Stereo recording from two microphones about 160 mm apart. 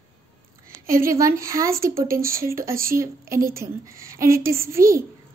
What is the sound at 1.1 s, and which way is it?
A woman's voice, 20° right (ahead or behind).